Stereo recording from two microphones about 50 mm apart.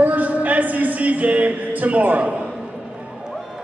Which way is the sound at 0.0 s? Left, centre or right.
Right.